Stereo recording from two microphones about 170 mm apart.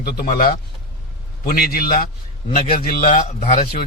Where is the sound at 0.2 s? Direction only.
55° left (ahead or behind).